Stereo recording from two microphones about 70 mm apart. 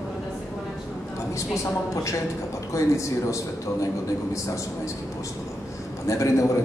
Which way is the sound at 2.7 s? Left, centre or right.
Left.